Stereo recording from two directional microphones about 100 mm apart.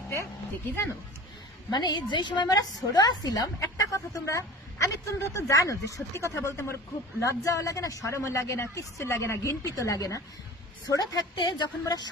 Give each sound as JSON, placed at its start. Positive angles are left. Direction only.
{"t": 1.7, "sound": "a woman's voice", "side_deg": 45}
{"t": 11.3, "sound": "a woman's voice", "side_deg": 45}